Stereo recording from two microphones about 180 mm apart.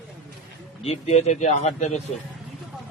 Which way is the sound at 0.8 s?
35° left (ahead or behind).